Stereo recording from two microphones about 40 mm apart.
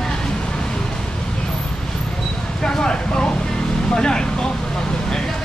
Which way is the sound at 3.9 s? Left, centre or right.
Centre.